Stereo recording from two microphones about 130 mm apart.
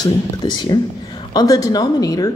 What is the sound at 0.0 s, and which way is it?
Speech, 35° left (ahead or behind).